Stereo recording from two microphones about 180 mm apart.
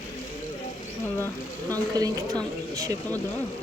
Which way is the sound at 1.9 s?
20° right (ahead or behind).